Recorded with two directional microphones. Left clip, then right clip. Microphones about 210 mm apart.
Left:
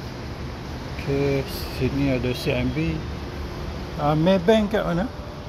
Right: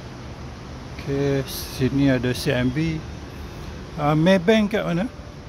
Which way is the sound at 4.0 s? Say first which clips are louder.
Right 2 dB; 35° right (ahead or behind).